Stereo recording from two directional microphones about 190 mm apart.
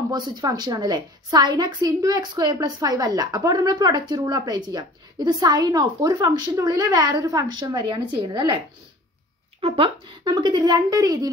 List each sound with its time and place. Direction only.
0.1 s a woman's voice: 20° right (ahead or behind)